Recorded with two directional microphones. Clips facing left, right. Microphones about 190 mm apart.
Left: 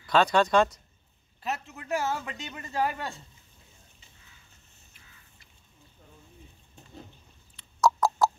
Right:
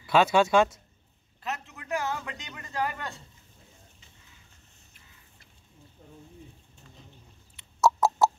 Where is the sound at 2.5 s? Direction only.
25° left (ahead or behind).